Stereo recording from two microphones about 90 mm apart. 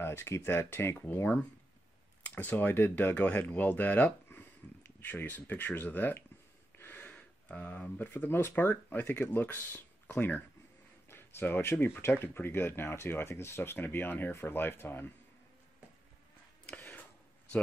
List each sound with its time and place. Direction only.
0.0 s speech: 30° left (ahead or behind)